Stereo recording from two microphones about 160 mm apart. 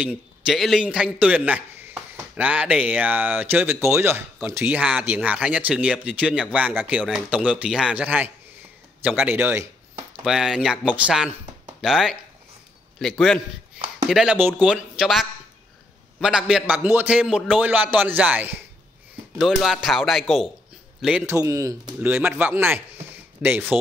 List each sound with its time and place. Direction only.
0.0 s a man's voice: centre (ahead or behind)
10.2 s speech: 5° right (ahead or behind)
14.0 s speech: 5° right (ahead or behind)
16.2 s a man's voice: 5° right (ahead or behind)
21.3 s a man's voice: 20° right (ahead or behind)